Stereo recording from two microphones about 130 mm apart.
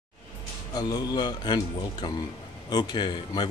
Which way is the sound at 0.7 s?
30° left (ahead or behind).